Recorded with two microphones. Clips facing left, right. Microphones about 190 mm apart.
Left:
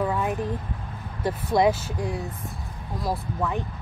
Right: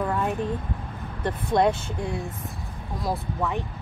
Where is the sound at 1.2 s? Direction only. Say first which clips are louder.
Left 1 dB; 5° left (ahead or behind).